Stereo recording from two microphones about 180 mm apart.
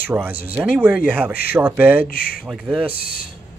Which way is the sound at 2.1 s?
55° left (ahead or behind).